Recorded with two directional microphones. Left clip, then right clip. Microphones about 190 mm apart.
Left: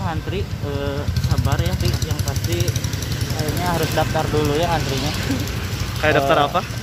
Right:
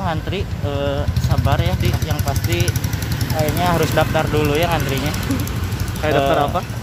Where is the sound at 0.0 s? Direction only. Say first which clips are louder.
Right 3 dB; 15° right (ahead or behind).